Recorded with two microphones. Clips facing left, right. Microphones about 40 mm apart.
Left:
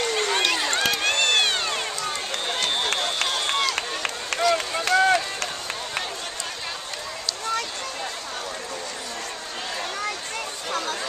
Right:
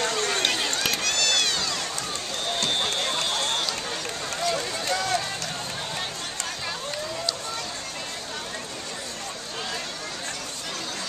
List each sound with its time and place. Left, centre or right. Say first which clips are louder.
0.0 s run: left 2 dB; left
2.9 s run: left 2 dB; left